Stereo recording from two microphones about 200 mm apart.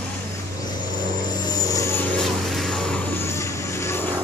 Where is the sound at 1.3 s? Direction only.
20° left (ahead or behind).